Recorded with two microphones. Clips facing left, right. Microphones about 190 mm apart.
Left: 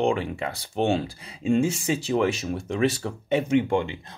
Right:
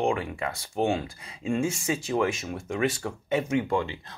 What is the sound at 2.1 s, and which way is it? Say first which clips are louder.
Speech: left 3 dB; 35° left (ahead or behind).